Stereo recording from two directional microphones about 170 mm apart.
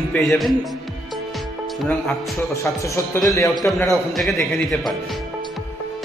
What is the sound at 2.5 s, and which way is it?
Speech, 20° left (ahead or behind).